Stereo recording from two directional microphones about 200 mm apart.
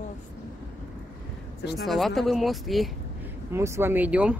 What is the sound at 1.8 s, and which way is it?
Speech, centre (ahead or behind).